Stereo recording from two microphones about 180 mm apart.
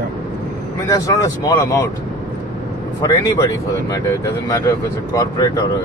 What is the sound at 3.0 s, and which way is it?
Speech, 20° left (ahead or behind).